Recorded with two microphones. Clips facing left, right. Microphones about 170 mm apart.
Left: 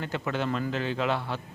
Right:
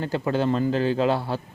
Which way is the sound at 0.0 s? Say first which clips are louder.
Right 6 dB; 35° right (ahead or behind).